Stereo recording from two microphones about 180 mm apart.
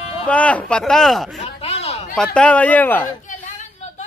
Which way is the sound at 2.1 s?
5° left (ahead or behind).